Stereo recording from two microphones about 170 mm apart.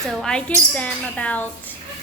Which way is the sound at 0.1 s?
5° left (ahead or behind).